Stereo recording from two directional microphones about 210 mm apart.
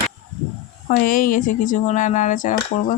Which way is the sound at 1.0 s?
40° left (ahead or behind).